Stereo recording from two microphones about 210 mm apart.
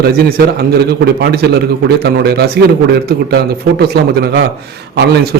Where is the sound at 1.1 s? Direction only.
50° right (ahead or behind).